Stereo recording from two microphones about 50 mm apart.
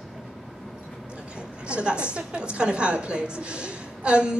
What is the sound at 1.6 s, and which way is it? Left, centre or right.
A woman's voice, right.